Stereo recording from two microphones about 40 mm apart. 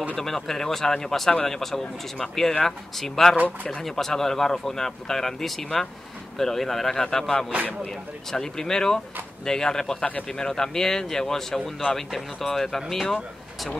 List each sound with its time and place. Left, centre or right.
0.2 s speech: centre